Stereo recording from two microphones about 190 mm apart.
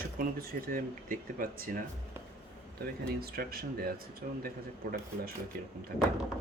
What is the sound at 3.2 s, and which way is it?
Speech, 55° right (ahead or behind).